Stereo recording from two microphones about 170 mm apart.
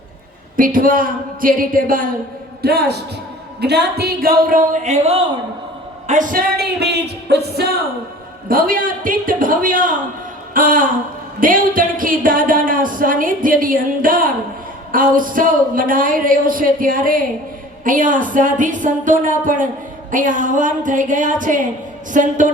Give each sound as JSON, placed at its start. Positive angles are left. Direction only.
{"t": 0.5, "sound": "speech", "side_deg": -55}
{"t": 2.6, "sound": "music", "side_deg": -70}
{"t": 3.6, "sound": "speech", "side_deg": -75}
{"t": 6.6, "sound": "music", "side_deg": -75}
{"t": 8.4, "sound": "speech", "side_deg": -55}